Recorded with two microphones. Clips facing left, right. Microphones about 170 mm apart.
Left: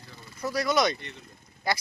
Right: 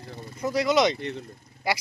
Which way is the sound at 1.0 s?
60° right (ahead or behind).